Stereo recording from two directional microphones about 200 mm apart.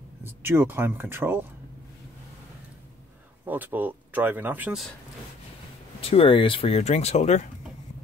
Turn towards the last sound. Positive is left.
turn(degrees=35)  # may be behind; listen again after turning